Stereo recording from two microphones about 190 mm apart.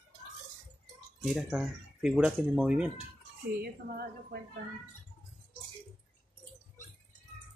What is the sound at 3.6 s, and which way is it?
Speech, 55° right (ahead or behind).